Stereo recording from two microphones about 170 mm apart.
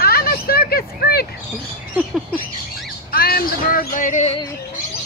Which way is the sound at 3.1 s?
65° left (ahead or behind).